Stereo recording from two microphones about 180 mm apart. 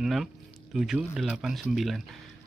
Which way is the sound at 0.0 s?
Centre (ahead or behind).